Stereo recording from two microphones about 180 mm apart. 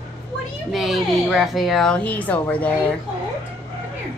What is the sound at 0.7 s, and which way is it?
A woman's voice, centre (ahead or behind).